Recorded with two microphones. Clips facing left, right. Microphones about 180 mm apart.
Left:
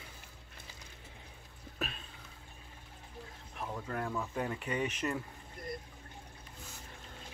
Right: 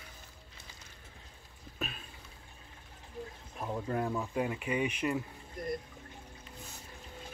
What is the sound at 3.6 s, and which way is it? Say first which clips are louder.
Speech: right 4 dB; 20° right (ahead or behind).